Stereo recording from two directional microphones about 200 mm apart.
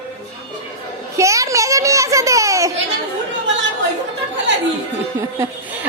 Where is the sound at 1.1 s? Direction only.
15° right (ahead or behind).